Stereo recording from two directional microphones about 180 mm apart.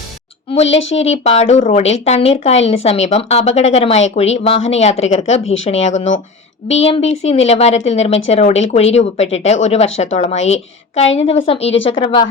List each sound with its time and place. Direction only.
0.5 s speech: 35° left (ahead or behind)